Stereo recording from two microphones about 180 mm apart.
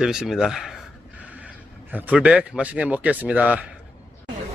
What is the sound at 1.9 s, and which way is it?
Speech, 10° right (ahead or behind).